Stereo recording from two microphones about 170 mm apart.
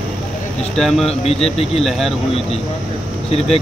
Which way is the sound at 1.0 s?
35° left (ahead or behind).